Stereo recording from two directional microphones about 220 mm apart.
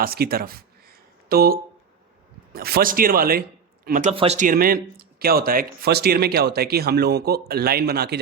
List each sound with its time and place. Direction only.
0.0 s a sound: 45° right (ahead or behind)
2.5 s speech: 45° right (ahead or behind)
4.1 s speech: 25° right (ahead or behind); by 8.2 s 45° right (ahead or behind)